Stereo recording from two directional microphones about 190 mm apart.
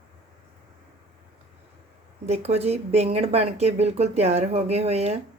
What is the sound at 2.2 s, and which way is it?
Speech, 35° right (ahead or behind).